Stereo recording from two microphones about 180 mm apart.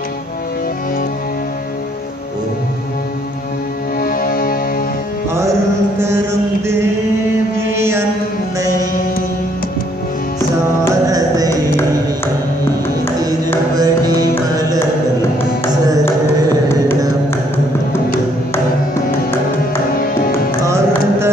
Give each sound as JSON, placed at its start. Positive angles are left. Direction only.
{"t": 4.0, "sound": "music", "side_deg": 55}
{"t": 5.3, "sound": "mantra", "side_deg": -15}
{"t": 10.8, "sound": "music", "side_deg": -20}
{"t": 13.7, "sound": "music", "side_deg": -20}
{"t": 20.6, "sound": "music", "side_deg": -15}